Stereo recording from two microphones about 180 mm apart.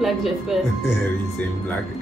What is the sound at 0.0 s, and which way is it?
Speech, centre (ahead or behind).